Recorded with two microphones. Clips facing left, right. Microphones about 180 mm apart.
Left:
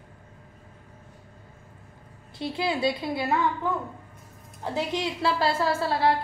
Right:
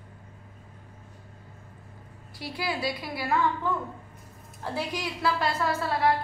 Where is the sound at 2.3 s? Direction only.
25° left (ahead or behind).